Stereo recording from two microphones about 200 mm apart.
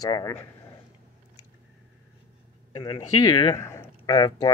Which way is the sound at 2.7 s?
20° left (ahead or behind).